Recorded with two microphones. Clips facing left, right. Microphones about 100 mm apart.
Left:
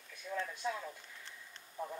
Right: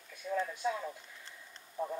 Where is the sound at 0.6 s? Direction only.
10° right (ahead or behind).